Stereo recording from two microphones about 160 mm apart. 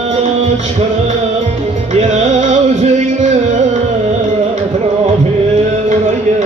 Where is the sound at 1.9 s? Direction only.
45° right (ahead or behind).